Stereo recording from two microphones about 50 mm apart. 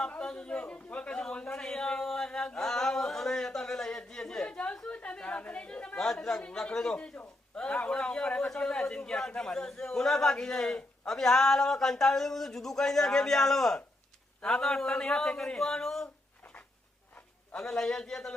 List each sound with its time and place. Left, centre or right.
0.1 s a man's voice: centre
4.4 s a man's voice: left
6.6 s speech: centre
6.9 s a man's voice: left
16.4 s a sound: left
17.6 s speech: centre